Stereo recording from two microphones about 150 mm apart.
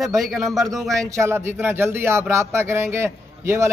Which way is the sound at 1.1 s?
15° right (ahead or behind).